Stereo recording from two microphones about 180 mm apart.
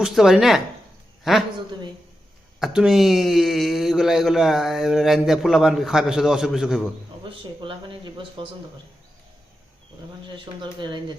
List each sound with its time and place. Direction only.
0.0 s a man's voice: centre (ahead or behind)
2.6 s speech: centre (ahead or behind)
7.6 s speech: 25° right (ahead or behind)
10.3 s speech: 25° right (ahead or behind)